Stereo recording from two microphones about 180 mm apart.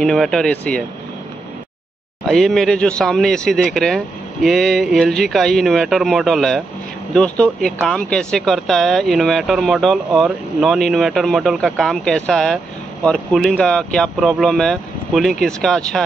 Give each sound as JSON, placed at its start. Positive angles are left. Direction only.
{"t": 0.0, "sound": "speech", "side_deg": 5}
{"t": 2.2, "sound": "speech", "side_deg": 0}